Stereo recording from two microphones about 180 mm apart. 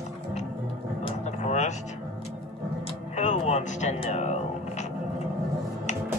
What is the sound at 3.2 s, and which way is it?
Music, 40° left (ahead or behind).